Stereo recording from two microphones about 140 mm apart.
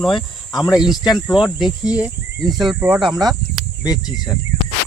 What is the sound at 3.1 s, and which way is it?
Speech, 30° right (ahead or behind).